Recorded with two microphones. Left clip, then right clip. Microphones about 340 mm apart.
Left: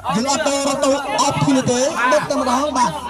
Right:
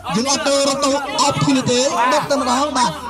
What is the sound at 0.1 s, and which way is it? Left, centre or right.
A man's voice, left.